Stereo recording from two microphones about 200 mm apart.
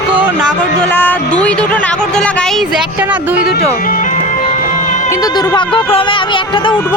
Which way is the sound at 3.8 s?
40° left (ahead or behind).